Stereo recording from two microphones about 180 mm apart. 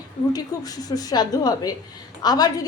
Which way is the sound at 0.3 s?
20° left (ahead or behind).